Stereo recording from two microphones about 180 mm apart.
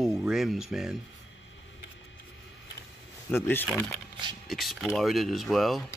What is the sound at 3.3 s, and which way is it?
Speech, 10° left (ahead or behind).